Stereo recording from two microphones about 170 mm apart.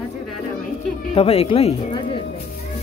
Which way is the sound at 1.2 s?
35° left (ahead or behind).